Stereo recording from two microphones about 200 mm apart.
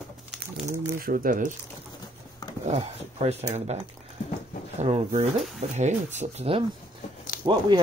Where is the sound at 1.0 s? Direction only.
45° right (ahead or behind).